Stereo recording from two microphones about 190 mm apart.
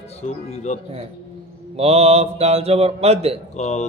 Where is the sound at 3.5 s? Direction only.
35° left (ahead or behind).